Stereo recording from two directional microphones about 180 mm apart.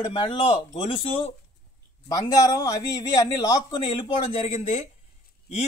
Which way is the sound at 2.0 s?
20° left (ahead or behind).